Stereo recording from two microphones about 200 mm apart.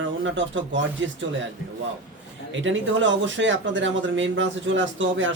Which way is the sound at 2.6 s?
70° right (ahead or behind).